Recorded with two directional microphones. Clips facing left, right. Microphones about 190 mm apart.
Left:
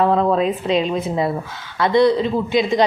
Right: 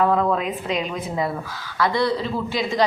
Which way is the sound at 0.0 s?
30° left (ahead or behind).